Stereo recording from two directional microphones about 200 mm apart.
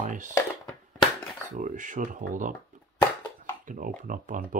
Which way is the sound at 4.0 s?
40° right (ahead or behind).